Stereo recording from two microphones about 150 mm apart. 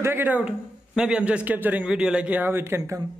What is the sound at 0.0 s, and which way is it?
A man's voice, 15° right (ahead or behind).